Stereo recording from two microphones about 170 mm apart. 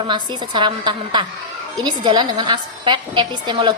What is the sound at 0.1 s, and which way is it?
A woman's voice, 30° right (ahead or behind).